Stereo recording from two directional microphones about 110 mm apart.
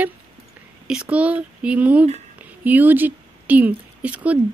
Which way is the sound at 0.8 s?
10° right (ahead or behind).